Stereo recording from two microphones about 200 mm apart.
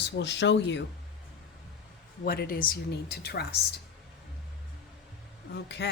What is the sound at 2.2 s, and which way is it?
A woman's voice, 45° left (ahead or behind).